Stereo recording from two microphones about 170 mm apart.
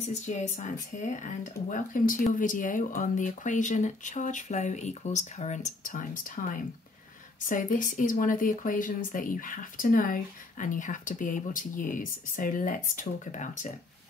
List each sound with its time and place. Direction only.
0.0 s speech: 45° left (ahead or behind)